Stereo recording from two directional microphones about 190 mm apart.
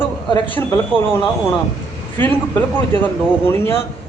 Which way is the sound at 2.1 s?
10° left (ahead or behind).